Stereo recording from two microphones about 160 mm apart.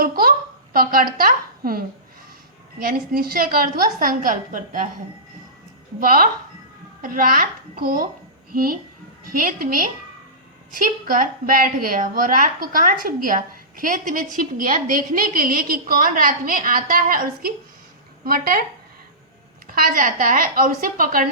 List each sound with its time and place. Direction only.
0.7 s a woman's voice: 65° right (ahead or behind)
3.1 s a woman's voice: 65° right (ahead or behind)
6.0 s a woman's voice: 60° right (ahead or behind)
19.6 s a woman's voice: 60° right (ahead or behind)